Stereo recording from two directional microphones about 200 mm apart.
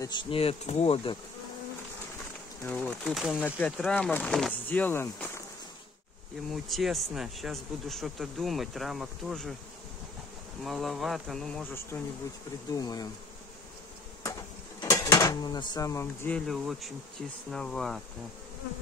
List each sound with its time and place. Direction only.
0.0 s speech: 25° left (ahead or behind)
2.6 s speech: 5° left (ahead or behind)
6.5 s speech: centre (ahead or behind)
10.6 s speech: centre (ahead or behind)
12.7 s speech: 20° left (ahead or behind)
14.8 s speech: 20° left (ahead or behind); by 18.0 s centre (ahead or behind)